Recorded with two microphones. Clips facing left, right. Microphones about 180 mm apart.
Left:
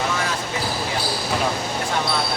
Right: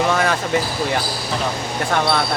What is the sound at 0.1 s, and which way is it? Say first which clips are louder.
Basketball bounce: right 7 dB; 65° right (ahead or behind).